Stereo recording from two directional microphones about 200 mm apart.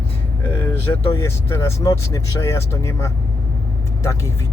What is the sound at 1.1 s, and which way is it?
Speech, 15° left (ahead or behind).